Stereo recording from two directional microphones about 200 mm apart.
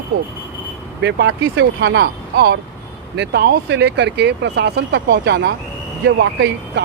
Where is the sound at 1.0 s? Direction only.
60° right (ahead or behind).